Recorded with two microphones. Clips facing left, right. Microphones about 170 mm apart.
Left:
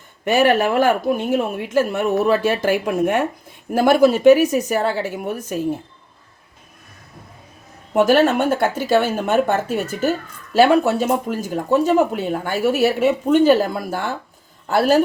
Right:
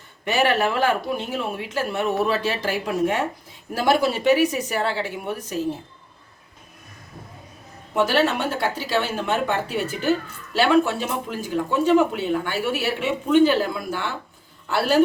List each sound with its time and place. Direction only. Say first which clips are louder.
0.3 s speech: left 5 dB; 50° left (ahead or behind)
7.9 s speech: left 6 dB; 50° left (ahead or behind)